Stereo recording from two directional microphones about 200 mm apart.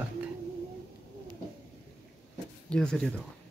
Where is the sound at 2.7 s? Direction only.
5° left (ahead or behind).